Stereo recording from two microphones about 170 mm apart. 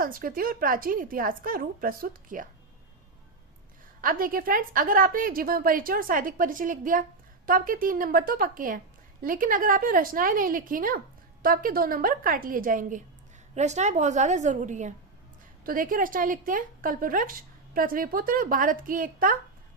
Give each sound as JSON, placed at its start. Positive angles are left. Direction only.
{"t": 0.0, "sound": "a woman's voice", "side_deg": -55}
{"t": 4.0, "sound": "a woman's voice", "side_deg": -55}
{"t": 13.6, "sound": "a woman's voice", "side_deg": -40}